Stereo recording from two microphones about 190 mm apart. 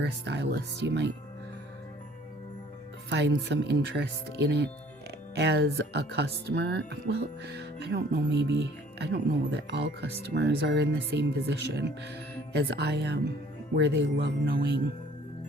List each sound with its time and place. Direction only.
0.0 s speech: 60° right (ahead or behind)
3.1 s speech: 65° right (ahead or behind)